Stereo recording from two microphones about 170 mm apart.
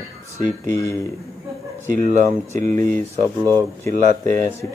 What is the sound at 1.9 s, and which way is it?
Speech, 45° right (ahead or behind).